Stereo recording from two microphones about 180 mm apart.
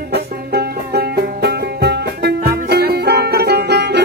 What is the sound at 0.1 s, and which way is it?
Music, 60° right (ahead or behind).